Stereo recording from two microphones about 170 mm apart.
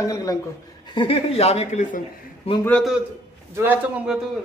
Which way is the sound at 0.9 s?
35° left (ahead or behind).